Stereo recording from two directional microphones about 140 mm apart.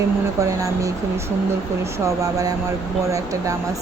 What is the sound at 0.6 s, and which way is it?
Speech, 25° right (ahead or behind).